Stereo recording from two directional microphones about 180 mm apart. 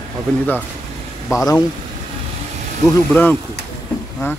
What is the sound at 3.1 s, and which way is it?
Speech, 10° left (ahead or behind).